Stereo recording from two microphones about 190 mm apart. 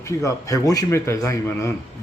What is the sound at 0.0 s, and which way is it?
Speech, 15° left (ahead or behind).